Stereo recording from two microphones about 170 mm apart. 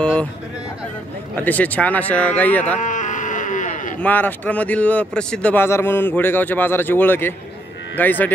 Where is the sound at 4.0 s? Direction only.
10° left (ahead or behind).